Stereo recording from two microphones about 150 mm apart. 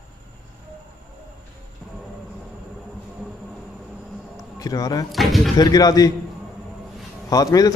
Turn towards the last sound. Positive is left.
turn(degrees=25)  # may be behind; listen again after turning